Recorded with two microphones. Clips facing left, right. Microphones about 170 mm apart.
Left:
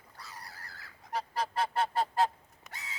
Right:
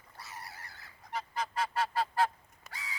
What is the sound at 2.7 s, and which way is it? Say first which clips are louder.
Crow: right 1 dB; 20° left (ahead or behind).